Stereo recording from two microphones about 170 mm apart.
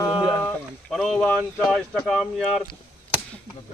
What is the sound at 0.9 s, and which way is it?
Speech, centre (ahead or behind).